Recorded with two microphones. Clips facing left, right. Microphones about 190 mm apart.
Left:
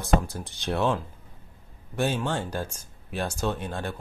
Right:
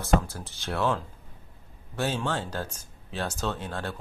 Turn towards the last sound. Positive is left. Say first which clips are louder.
# left 2 dB
turn(degrees=15)  # may be behind; listen again after turning